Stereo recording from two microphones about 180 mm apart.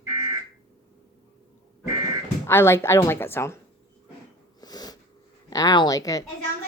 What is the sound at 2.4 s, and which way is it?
A woman's voice, 15° left (ahead or behind).